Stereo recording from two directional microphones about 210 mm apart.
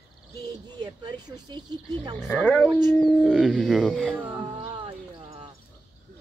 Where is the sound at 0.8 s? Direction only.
20° right (ahead or behind).